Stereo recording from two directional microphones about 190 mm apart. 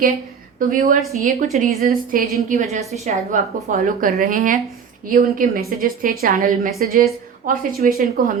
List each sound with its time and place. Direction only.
0.7 s a woman's voice: 45° right (ahead or behind)